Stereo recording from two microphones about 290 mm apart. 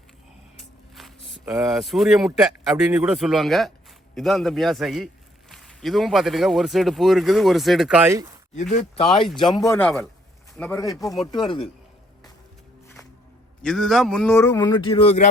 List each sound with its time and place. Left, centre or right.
1.0 s a sound: centre
1.5 s a man's voice: centre
9.5 s a man's voice: centre
13.6 s a man's voice: centre; by 15.3 s left